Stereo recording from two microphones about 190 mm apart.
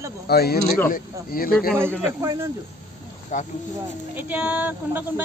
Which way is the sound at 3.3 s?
40° left (ahead or behind).